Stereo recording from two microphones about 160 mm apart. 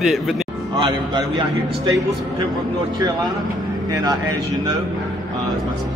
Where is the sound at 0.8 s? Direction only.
25° right (ahead or behind).